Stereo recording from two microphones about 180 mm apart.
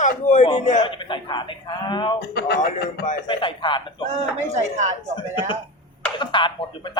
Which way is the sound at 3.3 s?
25° left (ahead or behind).